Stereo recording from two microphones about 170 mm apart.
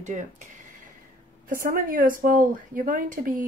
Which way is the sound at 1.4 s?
55° right (ahead or behind).